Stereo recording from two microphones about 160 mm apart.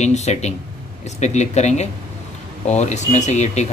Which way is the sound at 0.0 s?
45° left (ahead or behind).